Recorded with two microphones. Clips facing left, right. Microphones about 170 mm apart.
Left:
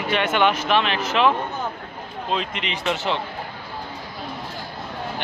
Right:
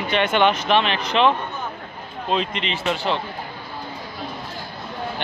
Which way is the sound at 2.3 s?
5° left (ahead or behind).